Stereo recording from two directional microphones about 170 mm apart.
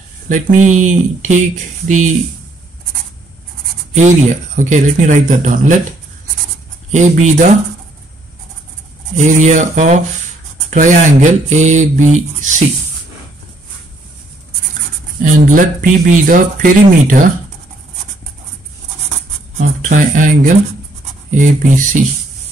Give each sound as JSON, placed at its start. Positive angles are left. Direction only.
{"t": 0.3, "sound": "speech", "side_deg": -45}
{"t": 3.9, "sound": "speech", "side_deg": -45}
{"t": 9.1, "sound": "speech", "side_deg": -45}
{"t": 15.2, "sound": "speech", "side_deg": -50}
{"t": 19.8, "sound": "speech", "side_deg": -50}